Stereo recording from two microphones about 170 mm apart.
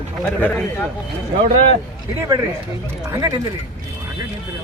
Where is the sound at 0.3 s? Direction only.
10° left (ahead or behind).